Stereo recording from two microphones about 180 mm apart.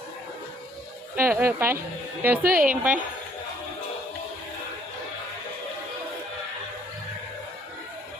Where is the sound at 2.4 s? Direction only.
50° right (ahead or behind).